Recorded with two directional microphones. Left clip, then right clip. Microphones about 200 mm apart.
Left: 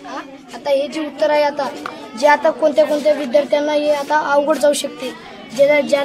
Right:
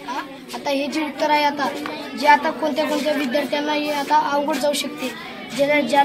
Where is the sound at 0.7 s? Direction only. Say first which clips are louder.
Left 5 dB; 25° left (ahead or behind).